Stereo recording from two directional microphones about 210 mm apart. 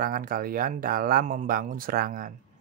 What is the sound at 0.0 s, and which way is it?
Speech, 40° right (ahead or behind).